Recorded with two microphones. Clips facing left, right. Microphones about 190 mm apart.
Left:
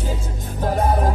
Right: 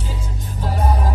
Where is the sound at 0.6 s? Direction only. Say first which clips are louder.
Left 4 dB; 50° left (ahead or behind).